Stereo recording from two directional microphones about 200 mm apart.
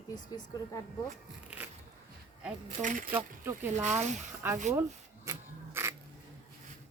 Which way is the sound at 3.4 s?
10° right (ahead or behind).